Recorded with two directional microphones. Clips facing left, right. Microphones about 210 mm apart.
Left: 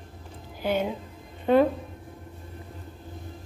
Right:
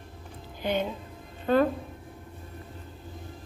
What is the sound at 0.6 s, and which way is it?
Speech, 10° left (ahead or behind).